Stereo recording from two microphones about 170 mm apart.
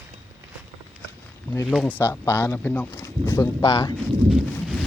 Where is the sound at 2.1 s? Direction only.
15° left (ahead or behind).